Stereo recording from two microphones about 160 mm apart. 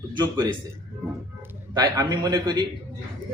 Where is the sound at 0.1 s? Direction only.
25° right (ahead or behind).